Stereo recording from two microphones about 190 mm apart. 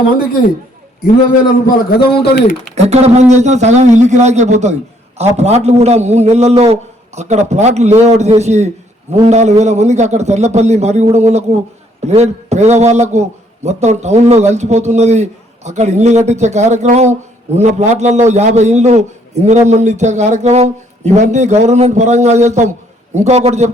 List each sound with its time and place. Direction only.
1.6 s a man's voice: 55° left (ahead or behind)
2.7 s a man's voice: 35° right (ahead or behind)